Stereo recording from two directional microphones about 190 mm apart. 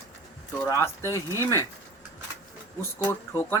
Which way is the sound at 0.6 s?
15° left (ahead or behind).